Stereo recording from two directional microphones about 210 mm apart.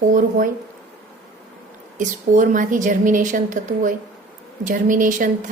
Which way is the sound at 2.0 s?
40° right (ahead or behind).